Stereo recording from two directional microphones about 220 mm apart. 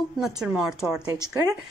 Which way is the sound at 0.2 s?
Centre (ahead or behind).